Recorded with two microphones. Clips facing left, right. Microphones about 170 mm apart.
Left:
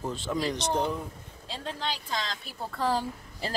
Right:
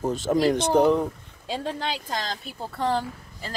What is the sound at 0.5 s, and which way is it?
Speech, 55° right (ahead or behind).